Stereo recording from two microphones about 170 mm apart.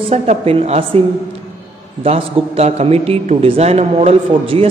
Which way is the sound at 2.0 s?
35° right (ahead or behind).